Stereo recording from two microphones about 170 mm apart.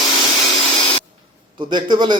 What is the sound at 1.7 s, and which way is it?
Speech, 25° right (ahead or behind).